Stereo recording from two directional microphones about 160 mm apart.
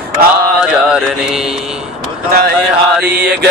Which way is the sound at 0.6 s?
5° right (ahead or behind).